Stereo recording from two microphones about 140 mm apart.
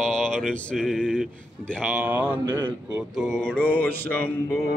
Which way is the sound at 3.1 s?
Centre (ahead or behind).